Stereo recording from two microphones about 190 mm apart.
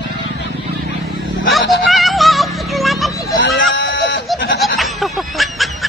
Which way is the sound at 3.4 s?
75° left (ahead or behind).